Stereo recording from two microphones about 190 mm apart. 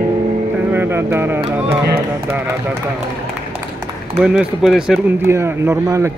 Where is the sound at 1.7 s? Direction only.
15° right (ahead or behind).